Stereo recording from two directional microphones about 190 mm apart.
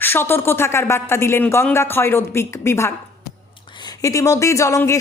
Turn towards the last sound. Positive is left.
turn(degrees=15)  # may be behind; listen again after turning